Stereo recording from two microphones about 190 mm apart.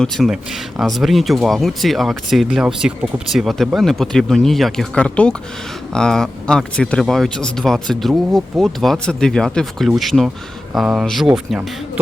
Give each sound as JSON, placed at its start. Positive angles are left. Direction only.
{"t": 0.0, "sound": "speech", "side_deg": 0}